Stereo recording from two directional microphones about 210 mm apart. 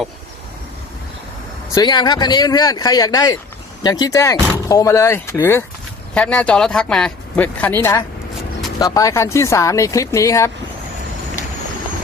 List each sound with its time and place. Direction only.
1.7 s speech: 20° left (ahead or behind)